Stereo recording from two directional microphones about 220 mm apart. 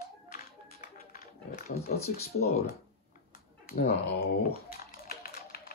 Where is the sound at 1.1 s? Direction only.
40° left (ahead or behind).